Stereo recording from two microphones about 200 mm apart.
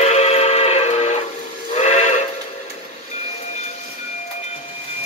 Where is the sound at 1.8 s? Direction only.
35° left (ahead or behind).